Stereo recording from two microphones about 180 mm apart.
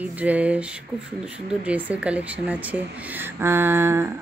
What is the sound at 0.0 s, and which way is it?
Speech, 10° right (ahead or behind).